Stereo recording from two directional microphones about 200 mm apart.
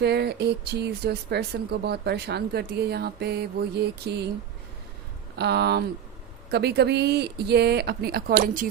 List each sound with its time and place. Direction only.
0.0 s speech: 55° right (ahead or behind)
5.4 s speech: 55° right (ahead or behind)